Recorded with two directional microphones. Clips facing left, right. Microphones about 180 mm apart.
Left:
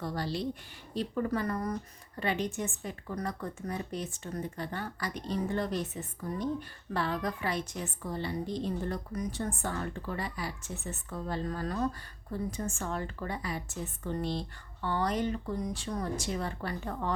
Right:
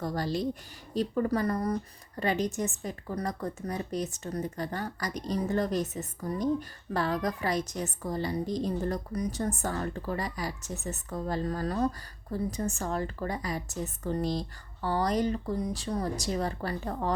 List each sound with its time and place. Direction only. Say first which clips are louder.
0.0 s speech: right 3 dB; 45° right (ahead or behind)